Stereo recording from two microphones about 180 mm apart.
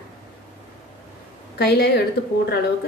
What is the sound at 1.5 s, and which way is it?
Speech, 65° left (ahead or behind).